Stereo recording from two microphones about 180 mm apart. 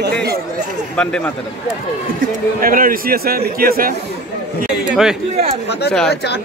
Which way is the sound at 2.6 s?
50° right (ahead or behind).